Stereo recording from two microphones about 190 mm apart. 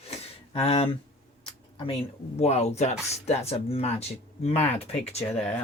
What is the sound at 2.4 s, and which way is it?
Speech, 35° left (ahead or behind).